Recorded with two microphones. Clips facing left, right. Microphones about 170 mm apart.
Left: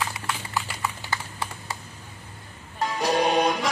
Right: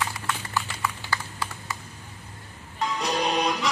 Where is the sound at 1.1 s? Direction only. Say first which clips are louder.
Even; 25° left (ahead or behind).